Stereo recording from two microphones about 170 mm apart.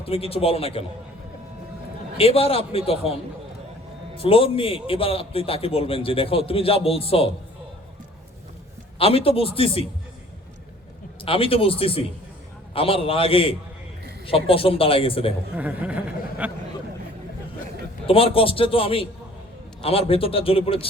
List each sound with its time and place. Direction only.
0.0 s a man's voice: 35° left (ahead or behind)
2.1 s a man's voice: 35° left (ahead or behind)
9.0 s a man's voice: 35° left (ahead or behind)
11.2 s a man's voice: 30° left (ahead or behind)
15.5 s speech: 10° right (ahead or behind)
18.0 s a man's voice: 35° left (ahead or behind)